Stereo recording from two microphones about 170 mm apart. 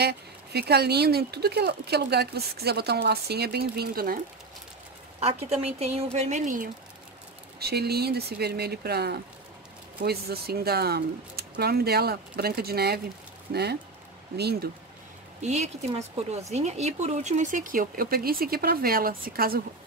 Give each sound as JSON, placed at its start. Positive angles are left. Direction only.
{"t": 0.0, "sound": "speech", "side_deg": -75}
{"t": 5.2, "sound": "a woman's voice", "side_deg": -40}
{"t": 7.5, "sound": "speech", "side_deg": -70}
{"t": 15.4, "sound": "speech", "side_deg": -40}